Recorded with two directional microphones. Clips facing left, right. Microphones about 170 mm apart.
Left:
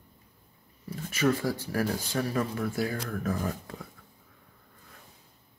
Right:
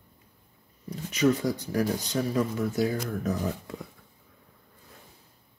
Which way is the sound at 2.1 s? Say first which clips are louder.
Right 2 dB; 25° right (ahead or behind).